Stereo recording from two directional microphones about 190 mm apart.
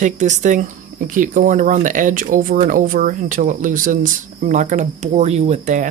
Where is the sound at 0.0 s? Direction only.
40° right (ahead or behind).